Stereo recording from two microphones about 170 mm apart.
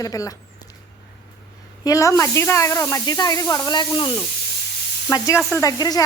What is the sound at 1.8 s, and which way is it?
Speech, 20° left (ahead or behind).